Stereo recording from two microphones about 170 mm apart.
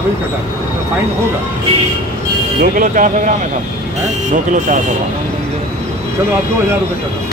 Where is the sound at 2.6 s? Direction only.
50° right (ahead or behind).